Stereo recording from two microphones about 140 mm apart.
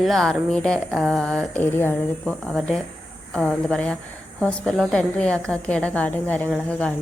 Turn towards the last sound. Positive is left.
turn(degrees=5)  # may be behind; listen again after turning